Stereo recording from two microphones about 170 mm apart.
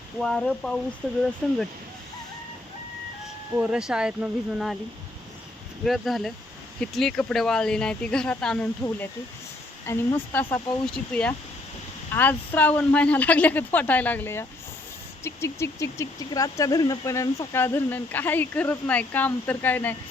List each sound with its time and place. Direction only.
0.2 s speech: 5° left (ahead or behind)
3.5 s speech: 5° right (ahead or behind)
5.8 s speech: centre (ahead or behind)